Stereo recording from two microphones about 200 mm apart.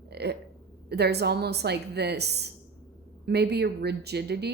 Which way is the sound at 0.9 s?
55° right (ahead or behind).